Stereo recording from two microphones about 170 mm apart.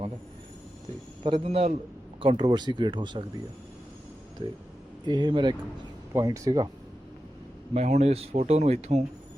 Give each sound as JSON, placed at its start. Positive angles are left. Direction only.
{"t": 1.2, "sound": "speech", "side_deg": -35}
{"t": 5.0, "sound": "speech", "side_deg": -25}
{"t": 7.7, "sound": "speech", "side_deg": -40}